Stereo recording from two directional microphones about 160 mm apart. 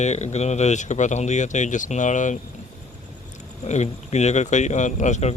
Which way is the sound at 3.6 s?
45° left (ahead or behind).